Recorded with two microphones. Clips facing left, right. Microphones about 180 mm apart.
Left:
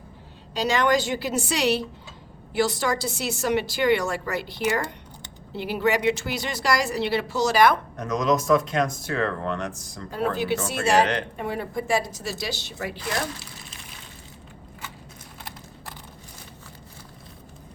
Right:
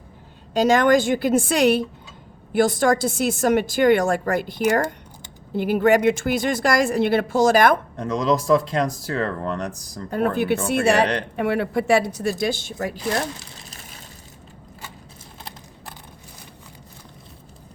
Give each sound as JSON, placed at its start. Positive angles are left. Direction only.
{"t": 0.5, "sound": "a woman's voice", "side_deg": -50}
{"t": 7.9, "sound": "speech", "side_deg": -30}
{"t": 10.1, "sound": "speech", "side_deg": -55}
{"t": 11.0, "sound": "speech", "side_deg": -35}
{"t": 11.3, "sound": "speech", "side_deg": -75}
{"t": 13.7, "sound": "vehicle", "side_deg": -40}